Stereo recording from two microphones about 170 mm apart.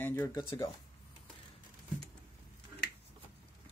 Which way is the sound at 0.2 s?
25° left (ahead or behind).